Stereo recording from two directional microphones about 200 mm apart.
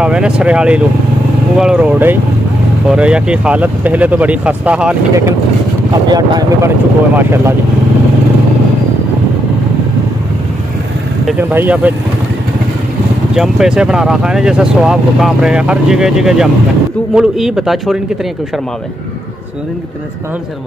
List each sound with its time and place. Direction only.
0.0 s speech: 5° right (ahead or behind)
6.0 s speech: 20° right (ahead or behind)
11.2 s speech: 10° right (ahead or behind)
13.3 s speech: 5° right (ahead or behind)